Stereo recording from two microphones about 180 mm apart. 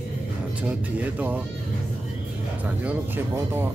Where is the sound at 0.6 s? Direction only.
10° right (ahead or behind).